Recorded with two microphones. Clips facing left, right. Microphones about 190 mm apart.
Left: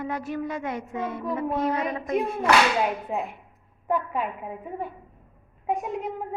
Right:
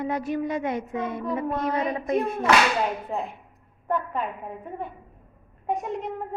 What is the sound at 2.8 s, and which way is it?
A woman's voice, 5° left (ahead or behind).